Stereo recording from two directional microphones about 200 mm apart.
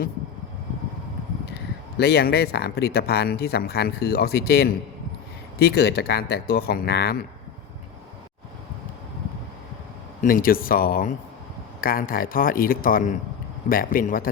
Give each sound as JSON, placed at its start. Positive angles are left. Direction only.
{"t": 2.0, "sound": "speech", "side_deg": 55}
{"t": 10.2, "sound": "speech", "side_deg": 45}